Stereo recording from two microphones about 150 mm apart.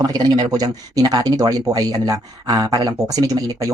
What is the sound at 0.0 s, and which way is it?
Speech, 25° right (ahead or behind).